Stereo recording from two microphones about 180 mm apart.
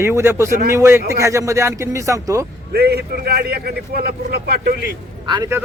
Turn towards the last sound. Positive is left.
turn(degrees=-15)  # may be behind; listen again after turning